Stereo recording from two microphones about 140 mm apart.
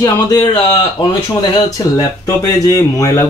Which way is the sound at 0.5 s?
35° left (ahead or behind).